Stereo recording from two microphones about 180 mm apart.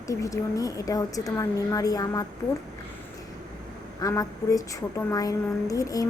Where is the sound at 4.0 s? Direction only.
20° left (ahead or behind).